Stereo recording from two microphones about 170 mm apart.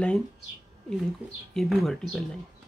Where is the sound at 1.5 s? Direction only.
Centre (ahead or behind).